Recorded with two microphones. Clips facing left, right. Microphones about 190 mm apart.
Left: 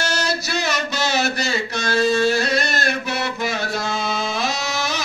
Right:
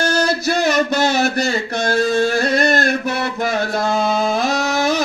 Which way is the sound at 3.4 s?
50° right (ahead or behind).